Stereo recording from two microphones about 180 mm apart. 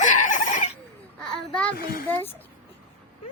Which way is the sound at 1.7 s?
55° left (ahead or behind).